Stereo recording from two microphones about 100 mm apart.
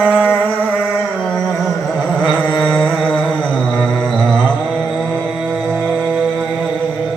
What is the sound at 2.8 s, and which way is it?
Music, 5° right (ahead or behind).